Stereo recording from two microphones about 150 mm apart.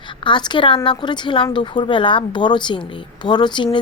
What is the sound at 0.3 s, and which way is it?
A woman's voice, 30° left (ahead or behind).